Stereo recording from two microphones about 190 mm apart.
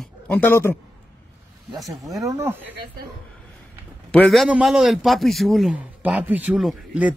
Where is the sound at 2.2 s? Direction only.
15° right (ahead or behind).